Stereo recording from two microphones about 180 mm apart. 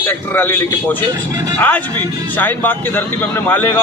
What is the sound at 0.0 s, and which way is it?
Speech, 10° left (ahead or behind).